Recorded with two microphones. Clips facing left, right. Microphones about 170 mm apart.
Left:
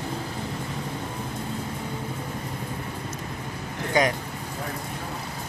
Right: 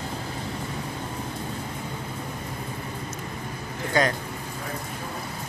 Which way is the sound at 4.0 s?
15° left (ahead or behind).